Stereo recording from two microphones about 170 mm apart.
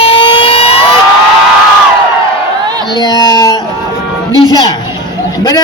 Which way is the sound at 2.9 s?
25° left (ahead or behind).